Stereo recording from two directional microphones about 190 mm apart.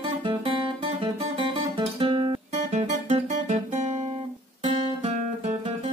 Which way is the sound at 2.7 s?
35° right (ahead or behind).